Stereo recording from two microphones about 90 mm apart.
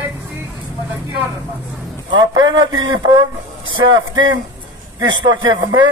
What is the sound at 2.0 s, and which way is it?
Speech, 55° right (ahead or behind).